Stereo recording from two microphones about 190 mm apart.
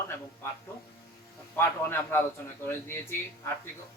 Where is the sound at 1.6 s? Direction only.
10° left (ahead or behind).